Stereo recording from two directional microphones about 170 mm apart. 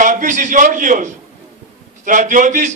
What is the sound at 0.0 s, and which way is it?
A man's voice, 50° right (ahead or behind).